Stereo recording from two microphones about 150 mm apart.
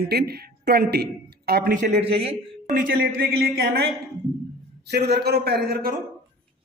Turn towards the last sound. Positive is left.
turn(degrees=-85)